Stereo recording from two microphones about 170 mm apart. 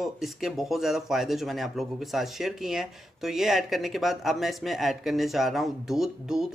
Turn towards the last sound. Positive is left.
turn(degrees=0)  # may be behind; listen again after turning